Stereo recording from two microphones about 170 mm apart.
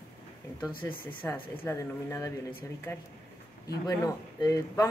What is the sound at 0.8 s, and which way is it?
Speech, 10° left (ahead or behind).